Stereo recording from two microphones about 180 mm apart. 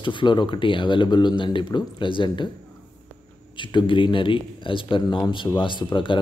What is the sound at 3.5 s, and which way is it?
Speech, 25° left (ahead or behind).